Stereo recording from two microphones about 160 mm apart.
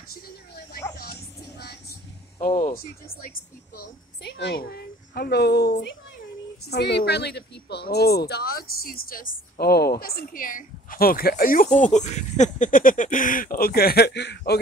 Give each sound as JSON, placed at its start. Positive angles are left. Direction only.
{"t": 1.6, "sound": "vehicle", "side_deg": 85}
{"t": 2.4, "sound": "speech", "side_deg": 60}
{"t": 3.3, "sound": "a child's voice", "side_deg": 80}
{"t": 11.6, "sound": "speech", "side_deg": 50}